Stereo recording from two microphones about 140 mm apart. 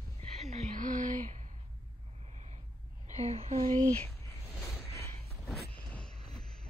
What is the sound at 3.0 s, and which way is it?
Speech, 55° right (ahead or behind).